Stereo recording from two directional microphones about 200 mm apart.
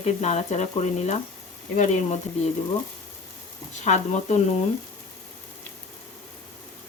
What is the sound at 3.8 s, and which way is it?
Speech, 35° left (ahead or behind).